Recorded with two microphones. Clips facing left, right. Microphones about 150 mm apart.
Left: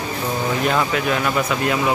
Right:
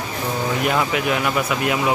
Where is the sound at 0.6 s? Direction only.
10° right (ahead or behind).